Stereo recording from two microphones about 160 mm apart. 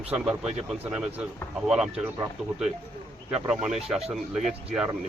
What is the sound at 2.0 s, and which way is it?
Speech, 15° right (ahead or behind).